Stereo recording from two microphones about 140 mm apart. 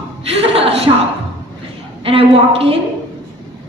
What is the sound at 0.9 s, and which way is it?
Speech, 30° right (ahead or behind).